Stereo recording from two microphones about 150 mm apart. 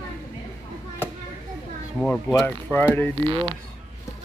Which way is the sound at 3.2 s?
35° right (ahead or behind).